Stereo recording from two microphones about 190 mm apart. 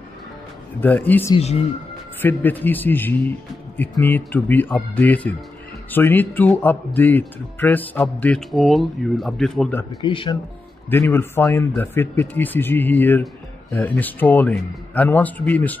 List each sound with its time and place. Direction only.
0.7 s speech: 10° left (ahead or behind)
1.3 s speech: 35° left (ahead or behind)
2.2 s speech: 10° left (ahead or behind)
10.0 s speech: 25° left (ahead or behind)
10.9 s speech: 10° left (ahead or behind)